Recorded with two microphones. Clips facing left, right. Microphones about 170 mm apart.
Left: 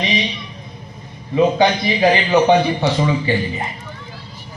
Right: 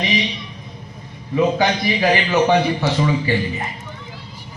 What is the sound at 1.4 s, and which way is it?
A man's voice, 20° left (ahead or behind).